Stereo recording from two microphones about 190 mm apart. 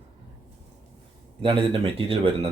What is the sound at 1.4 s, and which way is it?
Speech, 25° right (ahead or behind).